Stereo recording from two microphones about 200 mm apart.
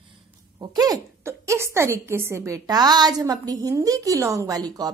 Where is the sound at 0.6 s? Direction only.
20° right (ahead or behind).